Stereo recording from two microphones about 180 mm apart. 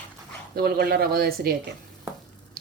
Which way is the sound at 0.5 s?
60° right (ahead or behind).